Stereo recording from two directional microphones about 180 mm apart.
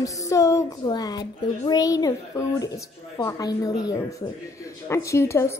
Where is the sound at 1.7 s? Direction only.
20° left (ahead or behind).